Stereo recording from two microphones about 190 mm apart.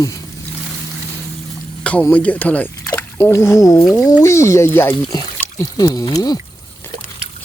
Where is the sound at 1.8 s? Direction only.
10° left (ahead or behind).